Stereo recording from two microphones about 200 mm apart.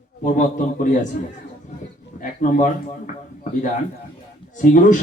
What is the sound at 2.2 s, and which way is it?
A man's voice, 40° left (ahead or behind).